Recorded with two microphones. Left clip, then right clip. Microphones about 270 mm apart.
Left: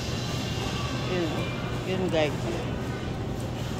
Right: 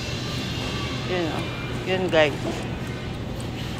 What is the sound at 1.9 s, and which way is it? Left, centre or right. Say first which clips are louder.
Speech: right 7 dB; centre.